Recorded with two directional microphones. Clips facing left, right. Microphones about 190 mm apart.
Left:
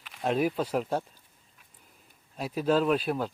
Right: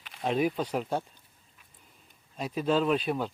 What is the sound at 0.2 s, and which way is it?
Speech, 5° left (ahead or behind).